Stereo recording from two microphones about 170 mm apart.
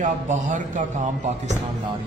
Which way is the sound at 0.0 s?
50° right (ahead or behind).